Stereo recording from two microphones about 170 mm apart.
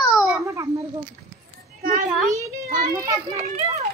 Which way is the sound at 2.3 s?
20° right (ahead or behind).